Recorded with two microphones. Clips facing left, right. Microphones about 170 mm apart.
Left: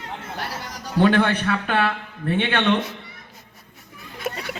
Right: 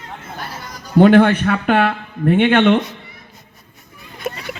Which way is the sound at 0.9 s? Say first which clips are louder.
Right 8 dB; 50° right (ahead or behind).